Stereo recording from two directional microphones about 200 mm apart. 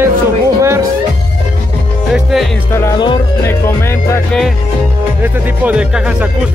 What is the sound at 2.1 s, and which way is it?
Speech, centre (ahead or behind).